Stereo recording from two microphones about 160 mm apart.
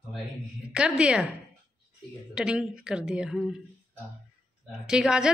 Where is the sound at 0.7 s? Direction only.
5° right (ahead or behind).